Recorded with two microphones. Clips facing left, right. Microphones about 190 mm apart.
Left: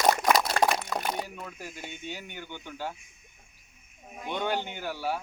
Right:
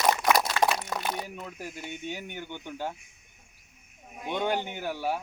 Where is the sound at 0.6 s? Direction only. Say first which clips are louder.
Left 1 dB; 50° left (ahead or behind).